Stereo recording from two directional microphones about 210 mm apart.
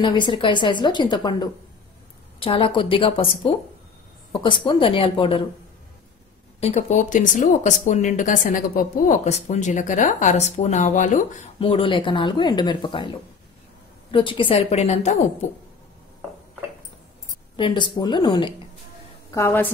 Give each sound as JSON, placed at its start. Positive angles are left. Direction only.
{"t": 0.0, "sound": "speech", "side_deg": 20}
{"t": 6.6, "sound": "speech", "side_deg": 35}
{"t": 11.6, "sound": "speech", "side_deg": 25}
{"t": 14.1, "sound": "speech", "side_deg": 25}
{"t": 17.6, "sound": "a woman's voice", "side_deg": 25}